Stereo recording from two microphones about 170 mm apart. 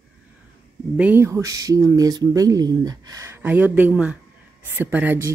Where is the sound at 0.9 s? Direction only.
10° right (ahead or behind).